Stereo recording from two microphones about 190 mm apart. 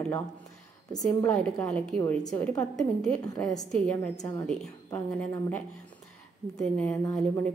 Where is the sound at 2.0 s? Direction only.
15° left (ahead or behind).